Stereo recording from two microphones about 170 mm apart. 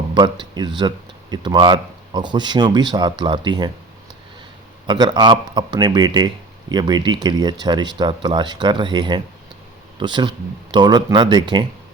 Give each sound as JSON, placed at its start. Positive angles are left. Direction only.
{"t": 0.1, "sound": "speech", "side_deg": -25}
{"t": 4.9, "sound": "speech", "side_deg": -25}